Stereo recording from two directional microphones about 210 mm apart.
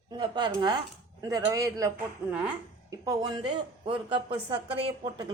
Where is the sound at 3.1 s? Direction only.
20° right (ahead or behind).